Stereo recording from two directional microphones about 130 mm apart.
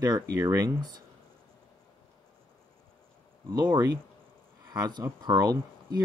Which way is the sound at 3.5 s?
35° right (ahead or behind).